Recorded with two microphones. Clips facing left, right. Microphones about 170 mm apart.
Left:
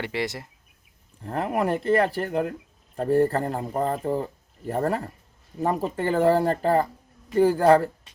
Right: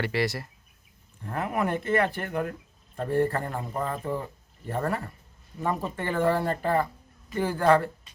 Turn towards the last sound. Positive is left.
turn(degrees=40)  # may be behind; listen again after turning